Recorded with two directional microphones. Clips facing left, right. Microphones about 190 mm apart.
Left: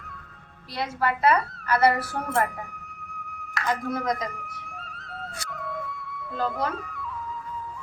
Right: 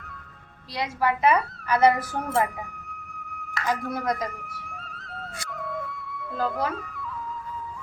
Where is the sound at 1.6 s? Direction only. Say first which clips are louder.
Right 2 dB; 15° right (ahead or behind).